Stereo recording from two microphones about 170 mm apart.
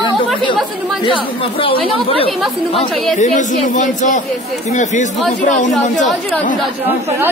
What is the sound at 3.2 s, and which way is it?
Speech, 45° left (ahead or behind).